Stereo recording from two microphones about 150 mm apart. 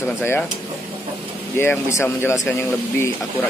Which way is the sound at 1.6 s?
20° left (ahead or behind).